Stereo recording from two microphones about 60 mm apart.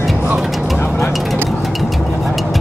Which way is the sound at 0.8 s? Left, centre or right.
Left.